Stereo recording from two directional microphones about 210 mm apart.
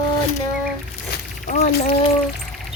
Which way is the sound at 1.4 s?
35° left (ahead or behind).